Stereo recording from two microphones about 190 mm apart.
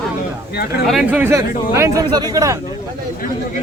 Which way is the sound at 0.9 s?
5° right (ahead or behind).